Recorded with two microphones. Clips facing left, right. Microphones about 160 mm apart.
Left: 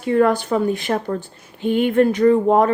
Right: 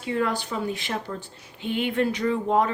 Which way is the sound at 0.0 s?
50° left (ahead or behind).